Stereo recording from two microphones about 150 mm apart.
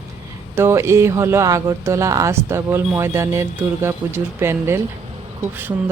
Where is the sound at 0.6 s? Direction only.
20° right (ahead or behind).